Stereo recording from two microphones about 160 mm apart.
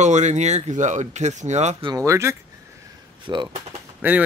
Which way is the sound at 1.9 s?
20° right (ahead or behind).